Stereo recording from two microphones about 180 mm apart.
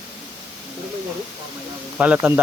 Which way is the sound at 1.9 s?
5° right (ahead or behind).